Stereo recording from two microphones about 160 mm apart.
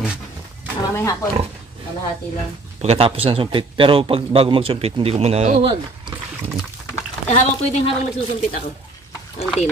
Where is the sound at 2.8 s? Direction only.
40° right (ahead or behind).